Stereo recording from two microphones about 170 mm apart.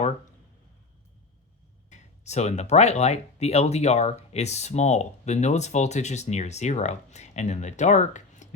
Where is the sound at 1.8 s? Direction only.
40° left (ahead or behind).